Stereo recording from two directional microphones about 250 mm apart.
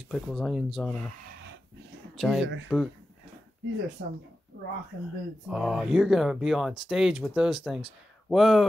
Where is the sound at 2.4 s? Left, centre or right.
Right.